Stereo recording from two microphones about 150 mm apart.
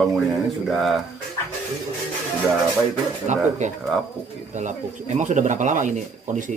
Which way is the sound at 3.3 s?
50° right (ahead or behind).